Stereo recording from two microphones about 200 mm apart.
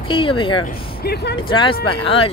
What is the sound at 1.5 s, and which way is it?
Speech, 25° left (ahead or behind).